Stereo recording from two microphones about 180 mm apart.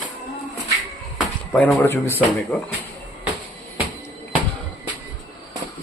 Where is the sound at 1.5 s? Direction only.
5° left (ahead or behind).